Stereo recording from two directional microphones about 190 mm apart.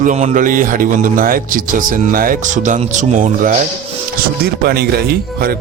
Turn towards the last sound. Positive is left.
turn(degrees=-55)  # may be behind; listen again after turning